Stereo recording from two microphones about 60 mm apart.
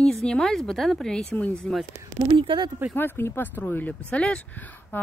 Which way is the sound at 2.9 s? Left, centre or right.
Left.